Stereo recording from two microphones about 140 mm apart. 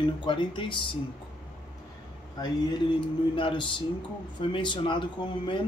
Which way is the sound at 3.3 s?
35° left (ahead or behind).